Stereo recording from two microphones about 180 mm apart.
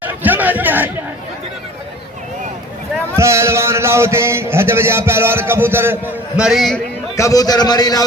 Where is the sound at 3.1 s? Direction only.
15° right (ahead or behind).